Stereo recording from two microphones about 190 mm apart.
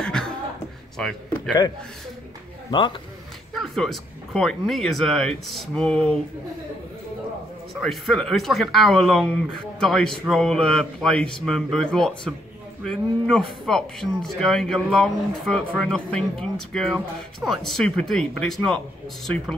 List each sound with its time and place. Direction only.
0.0 s chuckle: 5° left (ahead or behind)
0.9 s speech: 5° left (ahead or behind)
2.7 s speech: 25° left (ahead or behind)
3.5 s speech: centre (ahead or behind)
7.8 s speech: centre (ahead or behind)